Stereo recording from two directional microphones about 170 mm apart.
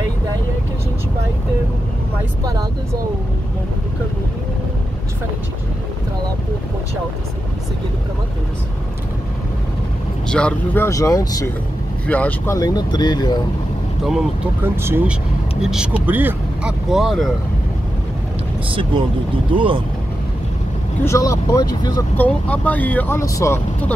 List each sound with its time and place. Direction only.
10.3 s speech: 10° left (ahead or behind)
12.1 s speech: 10° left (ahead or behind)
12.5 s speech: 20° left (ahead or behind)
14.0 s speech: 5° right (ahead or behind)
18.7 s speech: 30° right (ahead or behind)
21.0 s speech: 20° left (ahead or behind)
22.1 s speech: 10° left (ahead or behind)